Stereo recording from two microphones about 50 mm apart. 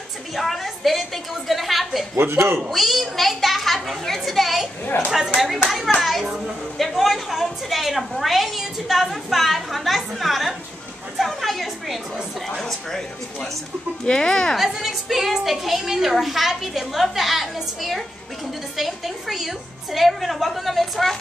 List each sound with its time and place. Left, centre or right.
0.4 s a sound: centre
2.3 s speech: right
2.7 s a woman's voice: centre
14.6 s a woman's voice: centre
18.8 s a woman's voice: centre